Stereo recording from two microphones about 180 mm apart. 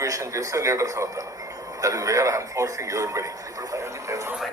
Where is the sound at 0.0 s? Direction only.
15° right (ahead or behind).